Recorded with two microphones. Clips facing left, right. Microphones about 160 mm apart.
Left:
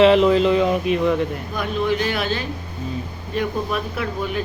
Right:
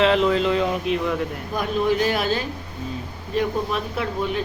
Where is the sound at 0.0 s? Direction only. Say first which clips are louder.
Left 5 dB; 5° left (ahead or behind).